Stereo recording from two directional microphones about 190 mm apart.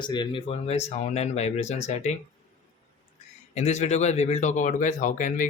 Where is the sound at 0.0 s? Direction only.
25° left (ahead or behind).